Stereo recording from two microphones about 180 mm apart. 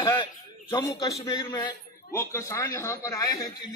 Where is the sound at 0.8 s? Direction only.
20° left (ahead or behind).